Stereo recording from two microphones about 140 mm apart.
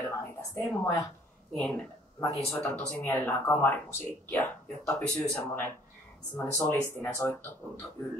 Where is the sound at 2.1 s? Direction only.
20° left (ahead or behind).